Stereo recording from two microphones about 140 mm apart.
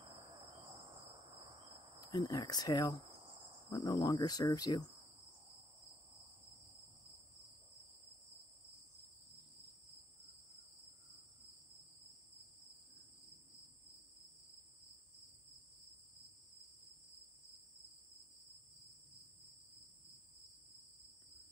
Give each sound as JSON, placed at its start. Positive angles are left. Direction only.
{"t": 0.0, "sound": "cricket", "side_deg": -35}
{"t": 2.0, "sound": "speech", "side_deg": 25}